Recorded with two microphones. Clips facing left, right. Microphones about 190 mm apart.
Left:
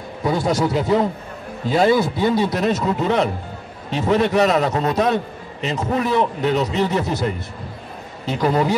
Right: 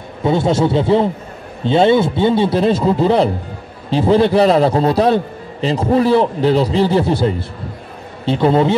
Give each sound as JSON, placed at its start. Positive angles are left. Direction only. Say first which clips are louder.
{"t": 0.2, "sound": "a man's voice", "louder": "right 5 dB", "side_deg": -25}